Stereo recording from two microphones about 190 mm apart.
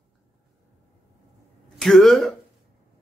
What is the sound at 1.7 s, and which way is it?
Speech, centre (ahead or behind).